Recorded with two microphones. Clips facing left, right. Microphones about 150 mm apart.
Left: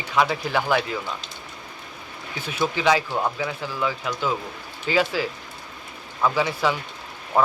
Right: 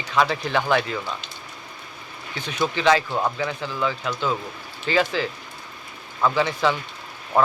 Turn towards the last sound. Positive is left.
turn(degrees=10)  # may be behind; listen again after turning